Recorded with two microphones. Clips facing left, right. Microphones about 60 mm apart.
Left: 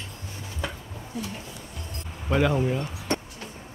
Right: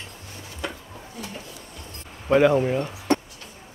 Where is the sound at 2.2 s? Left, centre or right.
Centre.